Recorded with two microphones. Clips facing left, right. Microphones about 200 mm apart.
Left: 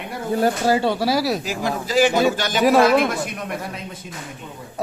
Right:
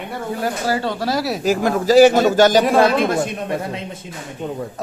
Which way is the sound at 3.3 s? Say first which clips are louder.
Right 5 dB; 30° right (ahead or behind).